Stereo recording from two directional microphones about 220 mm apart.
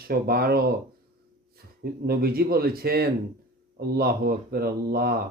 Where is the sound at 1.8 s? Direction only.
45° right (ahead or behind).